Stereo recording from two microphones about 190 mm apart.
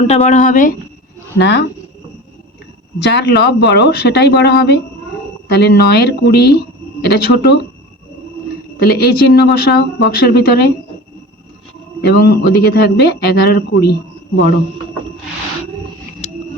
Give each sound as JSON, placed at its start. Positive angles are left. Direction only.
{"t": 0.1, "sound": "speech", "side_deg": 40}
{"t": 1.4, "sound": "speech", "side_deg": 65}
{"t": 3.0, "sound": "a woman's voice", "side_deg": 60}
{"t": 8.8, "sound": "a woman's voice", "side_deg": 55}
{"t": 12.0, "sound": "a woman's voice", "side_deg": 55}